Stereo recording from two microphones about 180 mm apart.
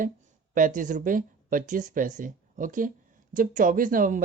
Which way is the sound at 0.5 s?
45° right (ahead or behind).